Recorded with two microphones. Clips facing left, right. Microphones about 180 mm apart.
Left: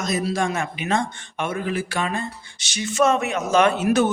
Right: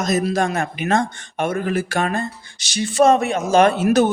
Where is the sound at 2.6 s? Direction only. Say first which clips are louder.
Right 5 dB; 35° right (ahead or behind).